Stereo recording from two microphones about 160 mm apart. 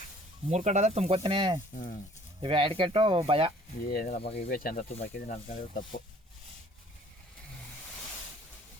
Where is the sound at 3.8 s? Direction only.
65° left (ahead or behind).